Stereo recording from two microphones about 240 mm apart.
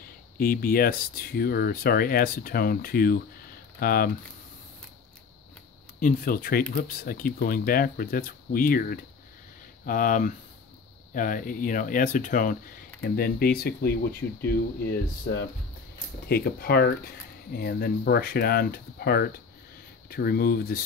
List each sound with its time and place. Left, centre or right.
0.4 s speech: left
5.9 s speech: left
16.3 s speech: left